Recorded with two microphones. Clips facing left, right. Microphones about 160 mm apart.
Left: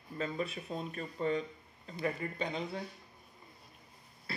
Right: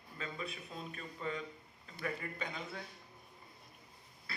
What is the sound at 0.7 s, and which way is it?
Speech, 40° left (ahead or behind).